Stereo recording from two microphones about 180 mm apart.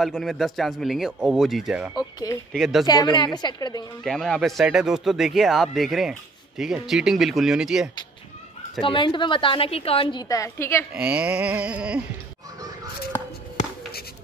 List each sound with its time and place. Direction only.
0.0 s speech: centre (ahead or behind)
2.9 s a woman's voice: 20° left (ahead or behind)
4.0 s speech: 5° left (ahead or behind)
8.8 s a woman's voice: 25° left (ahead or behind)
10.2 s a woman's voice: 20° left (ahead or behind)
10.9 s a sound: 5° right (ahead or behind)